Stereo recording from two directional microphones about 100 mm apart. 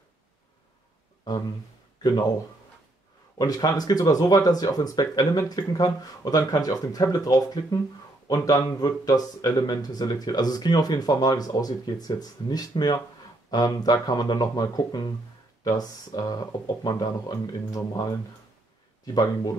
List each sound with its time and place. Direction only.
3.3 s speech: 40° left (ahead or behind)